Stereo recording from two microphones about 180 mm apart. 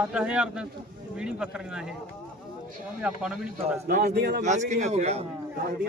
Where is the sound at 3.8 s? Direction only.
60° right (ahead or behind).